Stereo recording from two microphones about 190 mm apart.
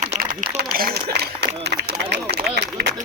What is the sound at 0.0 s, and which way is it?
Speech, 40° right (ahead or behind).